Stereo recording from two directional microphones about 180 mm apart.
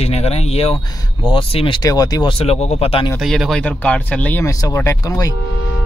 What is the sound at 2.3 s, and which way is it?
Speech, 35° left (ahead or behind).